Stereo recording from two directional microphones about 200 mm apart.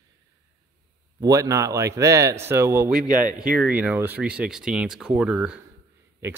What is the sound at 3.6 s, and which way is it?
A man's voice, 5° right (ahead or behind).